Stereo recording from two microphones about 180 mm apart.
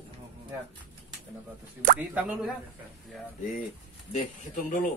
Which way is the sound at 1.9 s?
10° right (ahead or behind).